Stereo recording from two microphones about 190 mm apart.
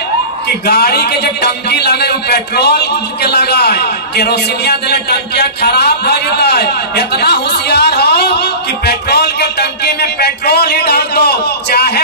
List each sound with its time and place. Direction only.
0.7 s a man's voice: 55° left (ahead or behind)